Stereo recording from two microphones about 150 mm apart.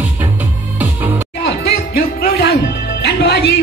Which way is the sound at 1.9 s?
90° left.